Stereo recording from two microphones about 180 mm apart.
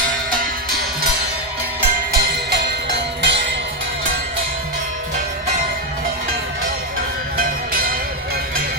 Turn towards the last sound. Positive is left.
turn(degrees=-50)  # may be behind; listen again after turning